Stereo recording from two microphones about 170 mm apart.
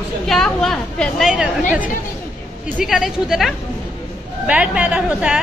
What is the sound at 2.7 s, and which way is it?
A woman's voice, centre (ahead or behind).